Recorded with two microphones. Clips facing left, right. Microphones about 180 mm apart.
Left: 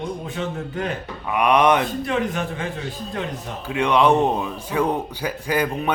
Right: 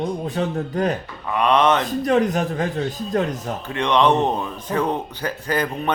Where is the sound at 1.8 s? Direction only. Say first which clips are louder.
Right 5 dB; 40° right (ahead or behind).